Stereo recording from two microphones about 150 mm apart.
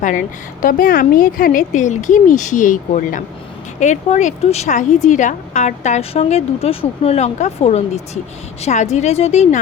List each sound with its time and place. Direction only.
0.6 s a woman's voice: 70° left (ahead or behind); by 9.6 s 45° left (ahead or behind)